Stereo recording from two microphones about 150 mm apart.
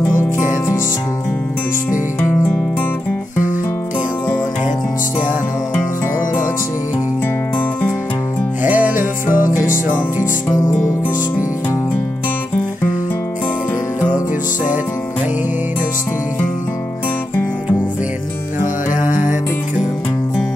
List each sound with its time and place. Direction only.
2.1 s music: 15° left (ahead or behind)
8.6 s music: 10° right (ahead or behind)
9.5 s music: 60° left (ahead or behind)